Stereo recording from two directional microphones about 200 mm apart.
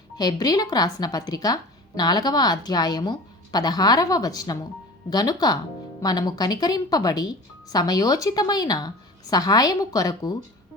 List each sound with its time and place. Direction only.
0.2 s speech: 20° left (ahead or behind)